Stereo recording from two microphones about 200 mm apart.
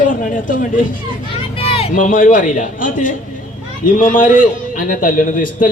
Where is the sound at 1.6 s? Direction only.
30° left (ahead or behind).